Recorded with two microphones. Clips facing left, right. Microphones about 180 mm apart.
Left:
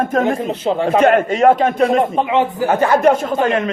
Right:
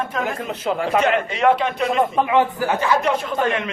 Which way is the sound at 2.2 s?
20° left (ahead or behind).